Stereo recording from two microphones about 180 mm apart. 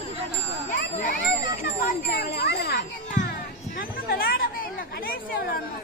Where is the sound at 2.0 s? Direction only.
60° left (ahead or behind).